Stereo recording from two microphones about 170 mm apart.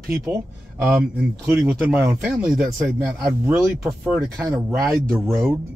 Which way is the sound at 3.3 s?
15° right (ahead or behind).